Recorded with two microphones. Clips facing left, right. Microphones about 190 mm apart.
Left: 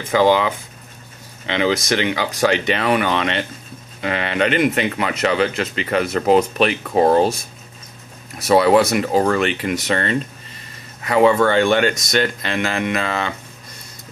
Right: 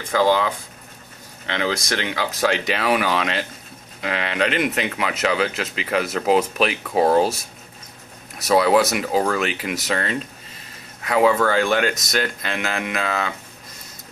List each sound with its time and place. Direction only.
1.4 s speech: 15° left (ahead or behind)
1.7 s speech: centre (ahead or behind)
8.4 s speech: centre (ahead or behind)